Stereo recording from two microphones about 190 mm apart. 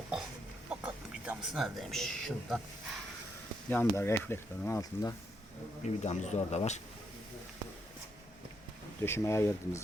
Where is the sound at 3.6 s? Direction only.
10° left (ahead or behind).